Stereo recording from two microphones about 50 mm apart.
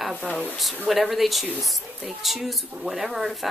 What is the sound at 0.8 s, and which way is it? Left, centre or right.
Speech, centre.